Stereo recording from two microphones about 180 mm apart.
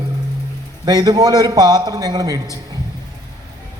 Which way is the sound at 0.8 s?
20° right (ahead or behind).